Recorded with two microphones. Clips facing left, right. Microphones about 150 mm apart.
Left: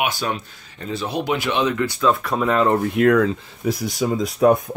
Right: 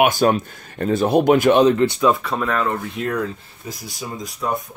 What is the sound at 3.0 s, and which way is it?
Speech, 80° left.